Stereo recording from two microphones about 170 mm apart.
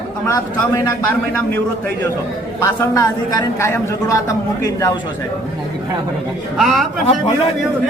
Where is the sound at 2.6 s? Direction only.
15° left (ahead or behind).